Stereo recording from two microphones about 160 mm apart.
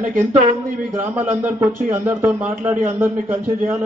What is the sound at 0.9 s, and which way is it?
A man's voice, 10° right (ahead or behind).